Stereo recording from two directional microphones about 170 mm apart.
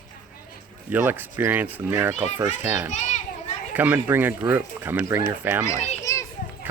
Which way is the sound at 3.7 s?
10° right (ahead or behind).